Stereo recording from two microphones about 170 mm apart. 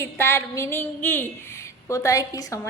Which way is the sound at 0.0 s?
15° left (ahead or behind).